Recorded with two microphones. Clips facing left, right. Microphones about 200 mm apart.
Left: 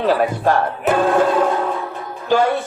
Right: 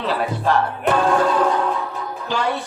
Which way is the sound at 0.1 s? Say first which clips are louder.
Left 3 dB; 50° left (ahead or behind).